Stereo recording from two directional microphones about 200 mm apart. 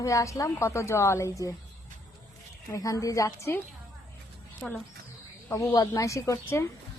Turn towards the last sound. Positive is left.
turn(degrees=15)  # may be behind; listen again after turning